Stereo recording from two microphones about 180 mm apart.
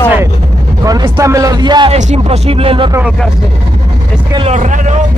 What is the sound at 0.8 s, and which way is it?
Speech, 20° right (ahead or behind).